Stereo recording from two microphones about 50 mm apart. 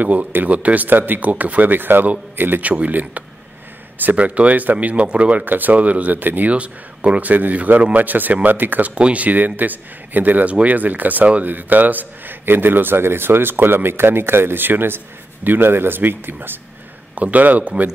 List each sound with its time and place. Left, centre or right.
0.0 s speech: right
5.4 s speech: right
6.5 s speech: right
8.9 s speech: right
17.1 s speech: right